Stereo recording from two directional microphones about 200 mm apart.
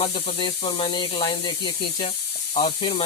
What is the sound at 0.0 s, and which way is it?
Speech, 25° left (ahead or behind).